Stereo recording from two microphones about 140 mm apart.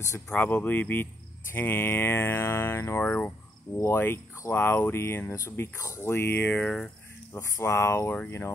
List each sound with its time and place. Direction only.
0.3 s speech: 10° left (ahead or behind)
7.3 s speech: 20° left (ahead or behind)